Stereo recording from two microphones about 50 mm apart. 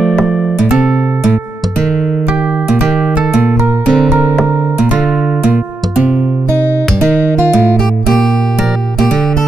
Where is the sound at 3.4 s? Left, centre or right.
Right.